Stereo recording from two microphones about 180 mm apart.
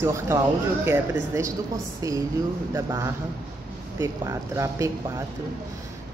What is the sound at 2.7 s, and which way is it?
Speech, 15° right (ahead or behind).